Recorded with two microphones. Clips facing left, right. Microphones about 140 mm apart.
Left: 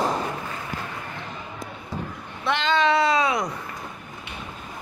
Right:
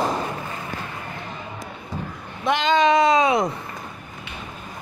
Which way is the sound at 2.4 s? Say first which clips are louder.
Right 3 dB; 15° right (ahead or behind).